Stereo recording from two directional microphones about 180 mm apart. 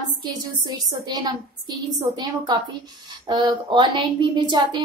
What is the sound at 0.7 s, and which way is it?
A woman's voice, 25° right (ahead or behind).